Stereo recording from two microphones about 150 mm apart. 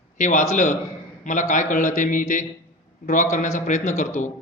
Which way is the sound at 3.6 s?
55° left (ahead or behind).